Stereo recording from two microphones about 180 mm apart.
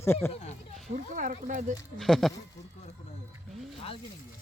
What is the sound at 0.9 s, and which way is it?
Cat, 45° right (ahead or behind).